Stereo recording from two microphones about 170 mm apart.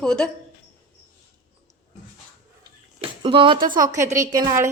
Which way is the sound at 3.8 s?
20° right (ahead or behind).